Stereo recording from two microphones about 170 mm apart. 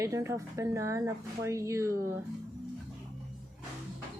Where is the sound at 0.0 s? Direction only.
15° right (ahead or behind).